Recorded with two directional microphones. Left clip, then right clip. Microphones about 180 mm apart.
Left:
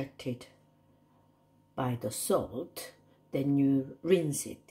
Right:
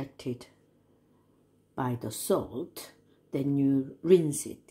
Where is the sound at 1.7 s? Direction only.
25° right (ahead or behind).